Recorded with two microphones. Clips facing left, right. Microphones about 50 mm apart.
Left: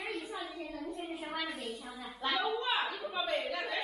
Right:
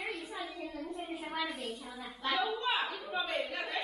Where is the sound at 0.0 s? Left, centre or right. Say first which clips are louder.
Left 1 dB; centre.